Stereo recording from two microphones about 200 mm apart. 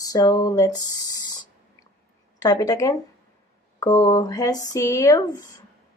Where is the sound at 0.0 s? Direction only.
20° left (ahead or behind).